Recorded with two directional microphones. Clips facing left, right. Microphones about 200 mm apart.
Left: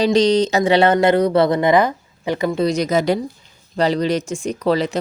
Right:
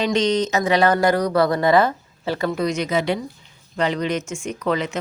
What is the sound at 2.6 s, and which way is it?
Speech, 40° left (ahead or behind).